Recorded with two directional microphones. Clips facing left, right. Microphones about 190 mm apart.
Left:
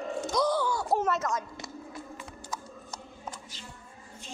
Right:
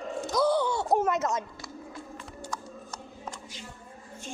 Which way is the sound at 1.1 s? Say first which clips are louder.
Right 3 dB; 25° right (ahead or behind).